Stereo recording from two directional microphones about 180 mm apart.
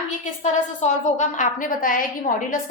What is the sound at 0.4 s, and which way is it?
A woman's voice, 40° left (ahead or behind).